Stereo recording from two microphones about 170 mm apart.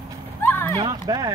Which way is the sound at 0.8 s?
25° right (ahead or behind).